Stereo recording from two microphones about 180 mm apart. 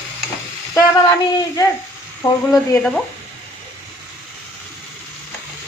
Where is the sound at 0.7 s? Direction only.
20° left (ahead or behind).